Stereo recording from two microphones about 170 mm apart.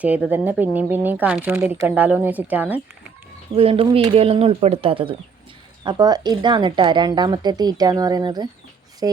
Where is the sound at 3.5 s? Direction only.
35° right (ahead or behind).